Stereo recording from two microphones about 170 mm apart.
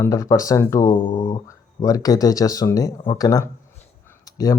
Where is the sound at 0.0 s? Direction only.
20° left (ahead or behind).